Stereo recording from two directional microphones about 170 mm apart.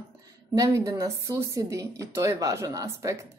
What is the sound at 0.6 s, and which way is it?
Speech, 20° right (ahead or behind).